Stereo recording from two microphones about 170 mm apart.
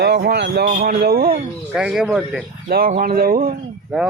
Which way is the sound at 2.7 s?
55° right (ahead or behind).